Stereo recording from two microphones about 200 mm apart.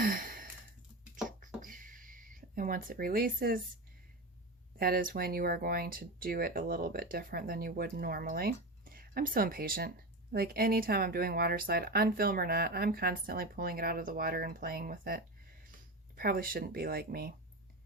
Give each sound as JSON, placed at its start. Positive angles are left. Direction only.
{"t": 0.0, "sound": "sigh", "side_deg": -45}
{"t": 1.6, "sound": "a sound", "side_deg": -40}
{"t": 4.8, "sound": "speech", "side_deg": -45}